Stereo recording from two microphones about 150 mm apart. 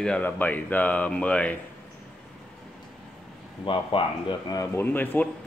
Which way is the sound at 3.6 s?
35° left (ahead or behind).